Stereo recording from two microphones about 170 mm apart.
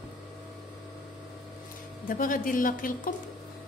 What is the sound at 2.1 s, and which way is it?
A woman's voice, 55° left (ahead or behind).